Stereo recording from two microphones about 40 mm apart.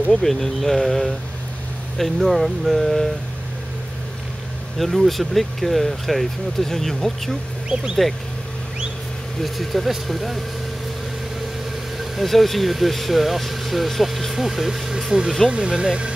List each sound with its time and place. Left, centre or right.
0.2 s speech: centre
4.7 s speech: centre
9.4 s speech: centre
12.0 s speech: centre
15.5 s speech: right